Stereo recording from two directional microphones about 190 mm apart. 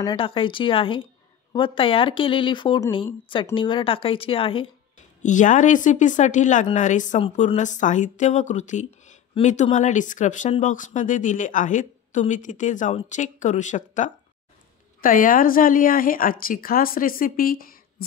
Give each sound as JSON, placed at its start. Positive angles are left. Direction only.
{"t": 0.0, "sound": "speech", "side_deg": 25}
{"t": 5.2, "sound": "a woman's voice", "side_deg": 40}